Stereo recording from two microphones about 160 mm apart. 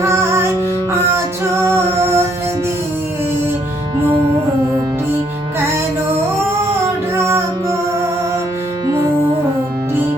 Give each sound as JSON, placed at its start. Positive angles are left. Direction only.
{"t": 0.0, "sound": "music", "side_deg": -15}
{"t": 1.6, "sound": "music", "side_deg": -15}
{"t": 7.2, "sound": "music", "side_deg": -15}